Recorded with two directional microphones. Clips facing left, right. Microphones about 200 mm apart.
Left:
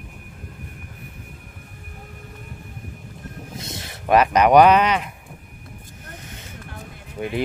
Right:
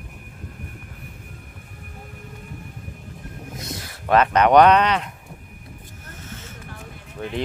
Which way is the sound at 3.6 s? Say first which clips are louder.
Right 2 dB; 25° left (ahead or behind).